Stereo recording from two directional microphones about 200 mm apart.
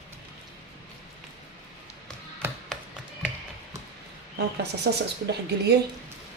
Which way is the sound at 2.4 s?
10° right (ahead or behind).